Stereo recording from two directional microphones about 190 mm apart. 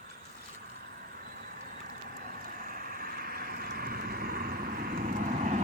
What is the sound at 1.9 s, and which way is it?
Vehicle, 45° right (ahead or behind).